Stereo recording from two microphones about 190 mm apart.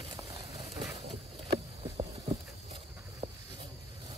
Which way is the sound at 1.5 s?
20° right (ahead or behind).